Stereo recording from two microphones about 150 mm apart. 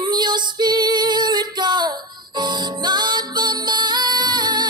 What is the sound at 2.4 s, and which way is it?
Music, 30° right (ahead or behind).